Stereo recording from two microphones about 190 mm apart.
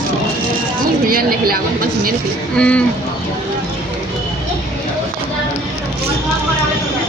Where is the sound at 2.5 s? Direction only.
5° left (ahead or behind).